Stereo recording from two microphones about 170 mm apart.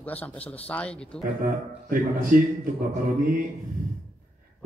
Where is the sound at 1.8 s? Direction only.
50° right (ahead or behind).